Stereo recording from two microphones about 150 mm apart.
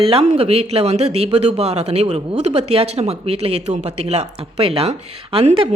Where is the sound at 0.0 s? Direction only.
40° right (ahead or behind).